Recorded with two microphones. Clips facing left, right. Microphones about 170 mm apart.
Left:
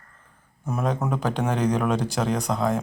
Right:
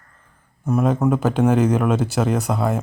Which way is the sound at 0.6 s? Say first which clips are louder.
Right 7 dB; 5° right (ahead or behind).